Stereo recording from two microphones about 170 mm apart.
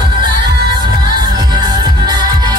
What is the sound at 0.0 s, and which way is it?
Music, 25° right (ahead or behind).